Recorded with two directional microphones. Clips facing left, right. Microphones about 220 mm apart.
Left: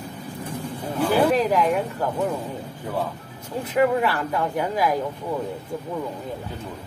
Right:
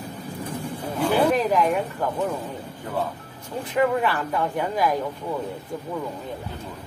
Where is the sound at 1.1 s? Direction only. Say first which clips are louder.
Left 1 dB; 5° left (ahead or behind).